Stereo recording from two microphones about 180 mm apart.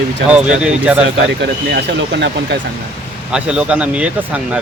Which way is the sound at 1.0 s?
75° right (ahead or behind).